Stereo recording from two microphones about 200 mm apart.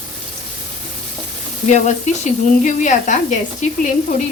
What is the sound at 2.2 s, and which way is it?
A woman's voice, 35° left (ahead or behind).